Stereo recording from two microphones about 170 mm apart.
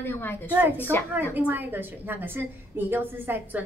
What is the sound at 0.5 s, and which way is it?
A woman's voice, 10° right (ahead or behind).